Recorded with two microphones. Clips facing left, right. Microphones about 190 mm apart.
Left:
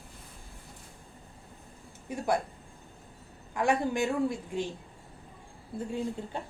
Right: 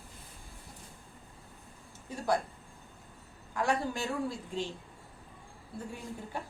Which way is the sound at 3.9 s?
20° left (ahead or behind).